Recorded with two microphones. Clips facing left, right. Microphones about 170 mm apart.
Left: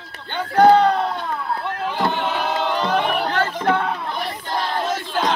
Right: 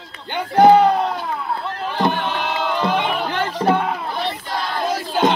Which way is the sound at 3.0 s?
15° right (ahead or behind).